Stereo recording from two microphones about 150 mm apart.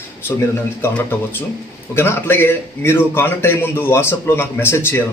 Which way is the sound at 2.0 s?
15° left (ahead or behind).